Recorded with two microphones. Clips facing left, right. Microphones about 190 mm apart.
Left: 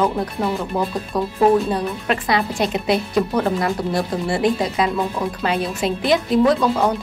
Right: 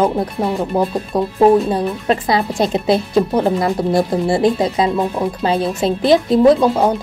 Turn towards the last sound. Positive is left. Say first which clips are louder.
# right 5 dB
turn(degrees=-30)  # may be behind; listen again after turning